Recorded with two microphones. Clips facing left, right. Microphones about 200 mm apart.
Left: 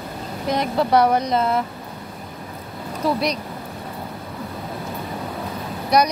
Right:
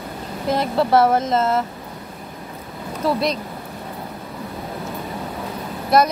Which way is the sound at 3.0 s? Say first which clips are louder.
Right 1 dB; centre (ahead or behind).